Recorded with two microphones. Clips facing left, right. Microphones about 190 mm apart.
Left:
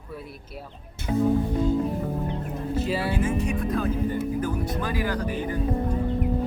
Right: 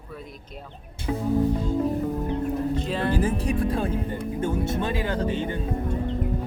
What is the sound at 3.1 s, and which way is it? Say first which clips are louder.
Speech: right 1 dB; 35° right (ahead or behind).